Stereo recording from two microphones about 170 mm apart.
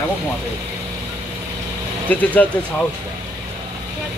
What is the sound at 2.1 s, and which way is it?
Speech, 10° left (ahead or behind).